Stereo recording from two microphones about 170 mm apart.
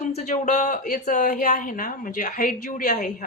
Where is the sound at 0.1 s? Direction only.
40° left (ahead or behind).